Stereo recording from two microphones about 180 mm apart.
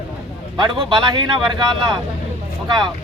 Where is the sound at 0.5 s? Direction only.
25° right (ahead or behind).